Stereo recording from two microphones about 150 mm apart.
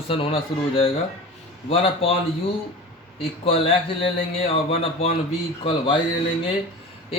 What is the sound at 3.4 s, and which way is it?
A man's voice, 40° left (ahead or behind).